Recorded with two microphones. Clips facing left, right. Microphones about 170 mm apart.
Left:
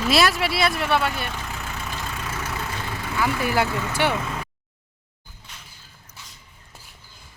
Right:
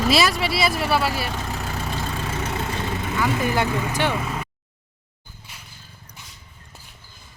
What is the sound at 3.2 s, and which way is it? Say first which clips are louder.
Speech: even; 20° right (ahead or behind).